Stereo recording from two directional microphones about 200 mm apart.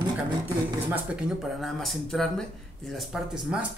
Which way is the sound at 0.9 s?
5° right (ahead or behind).